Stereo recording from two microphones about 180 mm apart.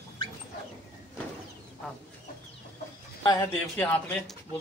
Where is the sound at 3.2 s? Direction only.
15° left (ahead or behind).